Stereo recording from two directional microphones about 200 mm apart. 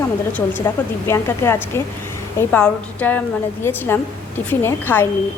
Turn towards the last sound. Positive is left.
turn(degrees=10)  # may be behind; listen again after turning